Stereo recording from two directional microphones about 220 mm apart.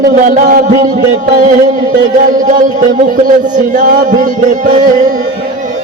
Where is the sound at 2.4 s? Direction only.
35° right (ahead or behind).